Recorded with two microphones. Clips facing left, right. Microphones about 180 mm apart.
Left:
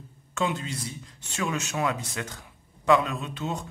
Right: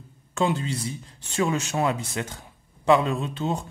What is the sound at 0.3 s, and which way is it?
Speech, 30° right (ahead or behind).